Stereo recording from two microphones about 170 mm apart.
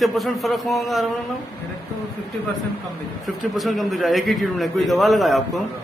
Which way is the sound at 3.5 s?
Centre (ahead or behind).